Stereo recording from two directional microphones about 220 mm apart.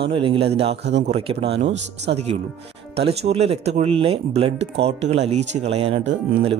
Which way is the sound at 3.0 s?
25° right (ahead or behind).